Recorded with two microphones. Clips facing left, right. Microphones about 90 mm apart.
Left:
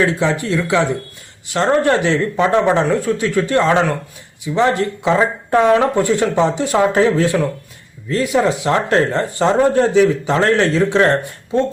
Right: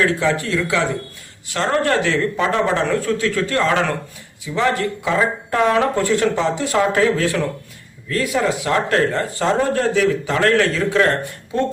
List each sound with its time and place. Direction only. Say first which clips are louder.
0.1 s speech: left 2 dB; 20° left (ahead or behind)